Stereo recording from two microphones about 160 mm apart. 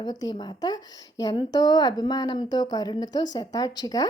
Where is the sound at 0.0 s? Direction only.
25° left (ahead or behind).